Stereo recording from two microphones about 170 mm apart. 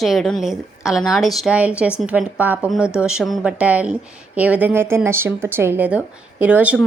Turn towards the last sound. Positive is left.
turn(degrees=-10)  # may be behind; listen again after turning